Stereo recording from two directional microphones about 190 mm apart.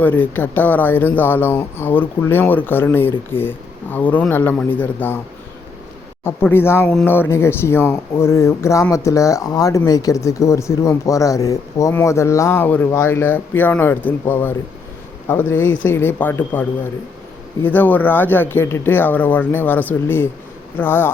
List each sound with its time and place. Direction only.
0.0 s speech: 10° left (ahead or behind)
6.2 s speech: 10° left (ahead or behind)
15.5 s speech: 85° left
15.9 s speech: 10° left (ahead or behind)